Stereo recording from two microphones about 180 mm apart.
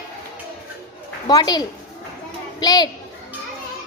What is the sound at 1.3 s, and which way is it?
A child's voice, 20° left (ahead or behind).